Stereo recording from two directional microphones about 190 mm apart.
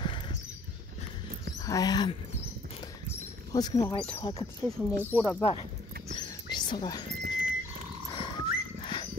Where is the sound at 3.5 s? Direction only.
20° left (ahead or behind).